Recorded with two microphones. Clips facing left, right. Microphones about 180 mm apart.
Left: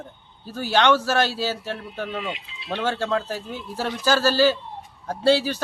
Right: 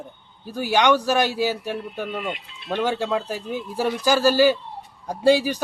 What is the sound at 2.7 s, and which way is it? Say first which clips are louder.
Speech: right 1 dB; 15° right (ahead or behind).